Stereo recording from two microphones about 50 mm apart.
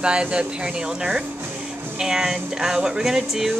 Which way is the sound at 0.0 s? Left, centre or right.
Centre.